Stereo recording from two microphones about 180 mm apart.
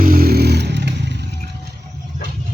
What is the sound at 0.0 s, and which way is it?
Vehicle, 55° right (ahead or behind).